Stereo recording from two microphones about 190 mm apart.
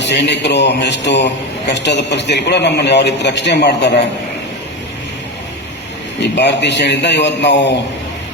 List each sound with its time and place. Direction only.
0.0 s a man's voice: 65° left (ahead or behind)
6.2 s a man's voice: 65° left (ahead or behind)